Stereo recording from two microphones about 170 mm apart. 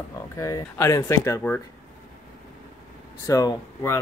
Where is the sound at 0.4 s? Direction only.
20° left (ahead or behind).